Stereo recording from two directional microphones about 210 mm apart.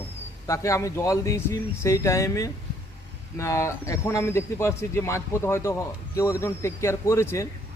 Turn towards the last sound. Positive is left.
turn(degrees=15)  # may be behind; listen again after turning